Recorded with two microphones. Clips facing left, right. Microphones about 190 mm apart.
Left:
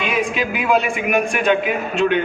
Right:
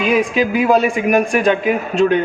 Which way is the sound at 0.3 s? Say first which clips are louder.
Right 3 dB; 40° right (ahead or behind).